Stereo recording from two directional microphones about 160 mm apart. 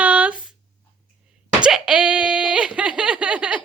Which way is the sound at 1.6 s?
5° right (ahead or behind).